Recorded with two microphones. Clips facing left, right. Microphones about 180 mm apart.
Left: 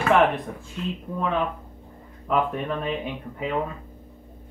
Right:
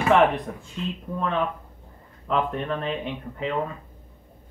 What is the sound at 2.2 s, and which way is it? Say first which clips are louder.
Speech: left 1 dB; 5° left (ahead or behind).